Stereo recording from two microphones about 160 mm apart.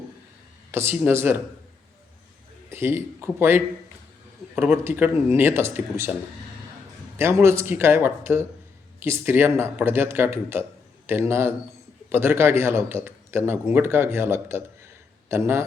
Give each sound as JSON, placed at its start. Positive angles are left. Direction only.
{"t": 0.7, "sound": "a man's voice", "side_deg": -15}
{"t": 2.6, "sound": "a man's voice", "side_deg": -15}
{"t": 7.2, "sound": "a man's voice", "side_deg": -15}